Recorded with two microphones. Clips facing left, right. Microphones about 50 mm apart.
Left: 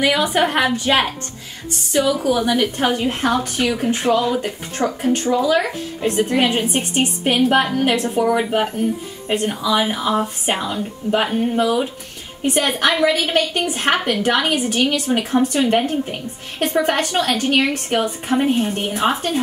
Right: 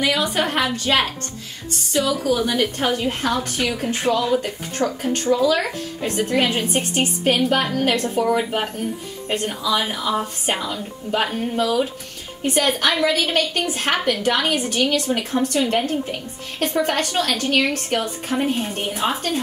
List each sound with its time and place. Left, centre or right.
0.0 s a woman's voice: centre
11.5 s a woman's voice: left; by 18.9 s centre